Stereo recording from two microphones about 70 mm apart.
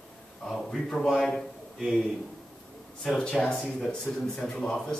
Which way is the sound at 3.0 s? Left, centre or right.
Centre.